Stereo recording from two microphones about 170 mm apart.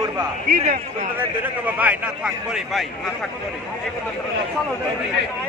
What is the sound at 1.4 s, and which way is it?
A man's voice, 10° right (ahead or behind).